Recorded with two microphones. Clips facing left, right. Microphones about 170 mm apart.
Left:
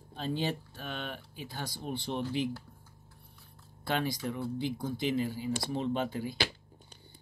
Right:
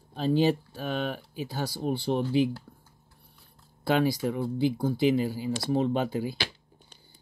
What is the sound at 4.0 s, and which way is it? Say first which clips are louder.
Speech: right 8 dB; 5° right (ahead or behind).